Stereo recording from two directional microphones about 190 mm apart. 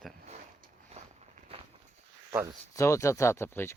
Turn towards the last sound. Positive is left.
turn(degrees=15)  # may be behind; listen again after turning